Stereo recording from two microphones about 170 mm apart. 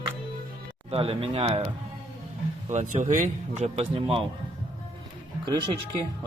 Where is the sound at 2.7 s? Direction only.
45° right (ahead or behind).